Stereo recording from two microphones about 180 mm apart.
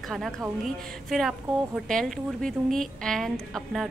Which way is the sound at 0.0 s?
Centre (ahead or behind).